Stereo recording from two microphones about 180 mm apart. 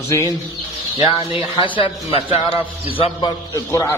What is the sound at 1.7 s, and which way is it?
A man's voice, 30° left (ahead or behind).